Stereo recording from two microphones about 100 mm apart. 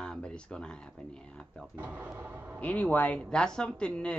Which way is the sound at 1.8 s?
15° right (ahead or behind).